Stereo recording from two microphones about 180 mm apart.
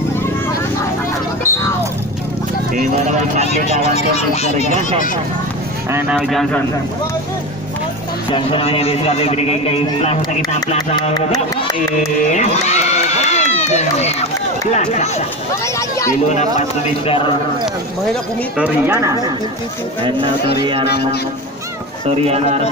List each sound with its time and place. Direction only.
2.7 s speech: 40° right (ahead or behind)
3.6 s a man's voice: 35° left (ahead or behind)
5.9 s speech: 10° right (ahead or behind)
6.1 s speech: centre (ahead or behind)
8.3 s a man's voice: 30° left (ahead or behind)
12.3 s crowd: 40° left (ahead or behind)
14.7 s a man's voice: 40° left (ahead or behind)
15.6 s speech: 15° left (ahead or behind)
16.3 s a man's voice: 40° left (ahead or behind)
18.6 s speech: 10° right (ahead or behind)
20.8 s speech: 65° left (ahead or behind)
22.0 s speech: 35° right (ahead or behind)